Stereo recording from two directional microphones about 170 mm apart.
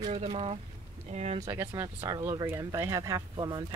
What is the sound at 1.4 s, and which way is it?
Speech, 15° right (ahead or behind).